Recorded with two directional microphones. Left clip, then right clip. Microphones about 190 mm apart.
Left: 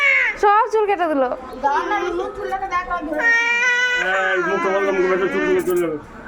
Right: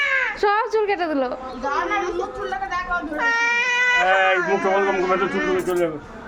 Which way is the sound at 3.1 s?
Centre (ahead or behind).